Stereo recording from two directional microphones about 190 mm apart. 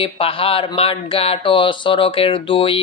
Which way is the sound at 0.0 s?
30° left (ahead or behind).